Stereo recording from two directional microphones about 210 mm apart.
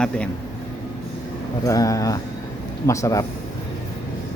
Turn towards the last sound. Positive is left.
turn(degrees=15)  # may be behind; listen again after turning